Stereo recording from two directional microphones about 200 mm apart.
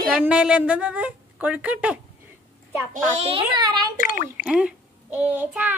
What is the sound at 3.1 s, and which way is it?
Speech, 30° right (ahead or behind).